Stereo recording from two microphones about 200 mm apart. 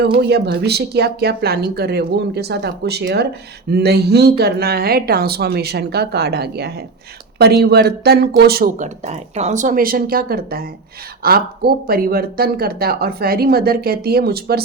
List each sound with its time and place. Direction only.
0.2 s speech: 55° right (ahead or behind)